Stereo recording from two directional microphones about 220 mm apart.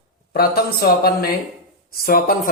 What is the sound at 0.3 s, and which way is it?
Speech, 45° left (ahead or behind).